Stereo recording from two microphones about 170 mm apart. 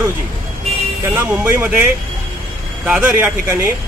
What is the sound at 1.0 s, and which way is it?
Speech, 15° right (ahead or behind).